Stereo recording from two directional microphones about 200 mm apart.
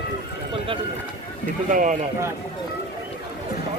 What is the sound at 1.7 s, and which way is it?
Speech, 40° right (ahead or behind).